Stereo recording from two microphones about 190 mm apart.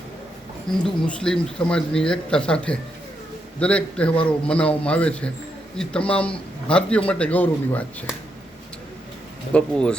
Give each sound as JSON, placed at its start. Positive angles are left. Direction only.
{"t": 0.7, "sound": "speech", "side_deg": 5}
{"t": 9.5, "sound": "speech", "side_deg": 5}